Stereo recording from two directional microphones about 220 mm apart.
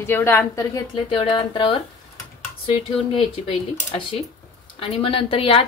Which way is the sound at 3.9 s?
20° left (ahead or behind).